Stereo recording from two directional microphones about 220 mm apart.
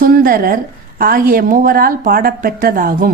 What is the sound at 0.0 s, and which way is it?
Speech, 40° right (ahead or behind).